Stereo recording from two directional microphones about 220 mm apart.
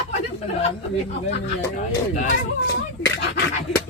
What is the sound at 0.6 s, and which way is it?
Speech, 30° left (ahead or behind).